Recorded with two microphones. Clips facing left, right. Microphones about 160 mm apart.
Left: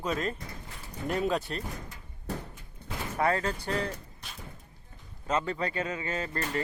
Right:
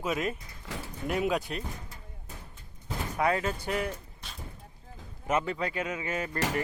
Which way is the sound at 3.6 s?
10° right (ahead or behind).